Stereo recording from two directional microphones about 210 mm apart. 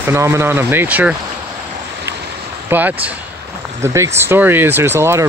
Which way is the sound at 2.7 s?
10° right (ahead or behind).